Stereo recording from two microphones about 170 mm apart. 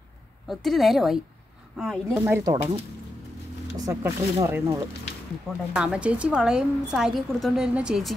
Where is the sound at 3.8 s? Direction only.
15° right (ahead or behind).